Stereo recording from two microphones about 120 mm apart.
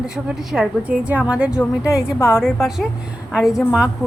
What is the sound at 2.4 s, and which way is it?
Speech, 5° right (ahead or behind).